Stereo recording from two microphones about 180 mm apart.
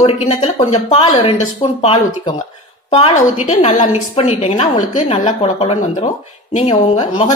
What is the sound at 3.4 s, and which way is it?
Speech, 45° left (ahead or behind).